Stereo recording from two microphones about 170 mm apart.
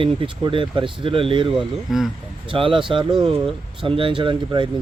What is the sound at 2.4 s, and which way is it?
Speech, 30° right (ahead or behind).